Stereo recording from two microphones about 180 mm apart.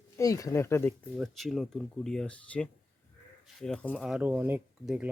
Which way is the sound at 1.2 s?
Centre (ahead or behind).